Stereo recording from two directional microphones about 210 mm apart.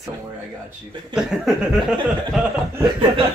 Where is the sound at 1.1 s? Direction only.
5° right (ahead or behind).